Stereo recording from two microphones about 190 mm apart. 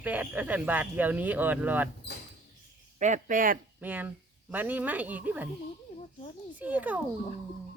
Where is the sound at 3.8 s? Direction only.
10° right (ahead or behind).